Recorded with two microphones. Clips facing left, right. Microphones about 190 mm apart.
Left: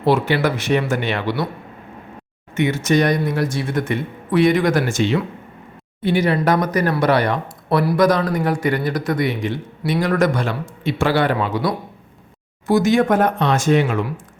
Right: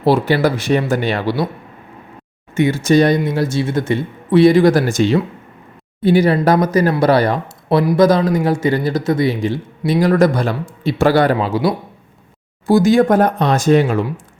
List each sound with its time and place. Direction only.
0.0 s speech: 35° right (ahead or behind)
2.6 s speech: 30° right (ahead or behind)
11.3 s speech: 25° right (ahead or behind)